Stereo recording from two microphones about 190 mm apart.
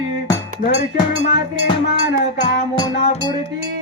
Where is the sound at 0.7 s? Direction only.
30° right (ahead or behind).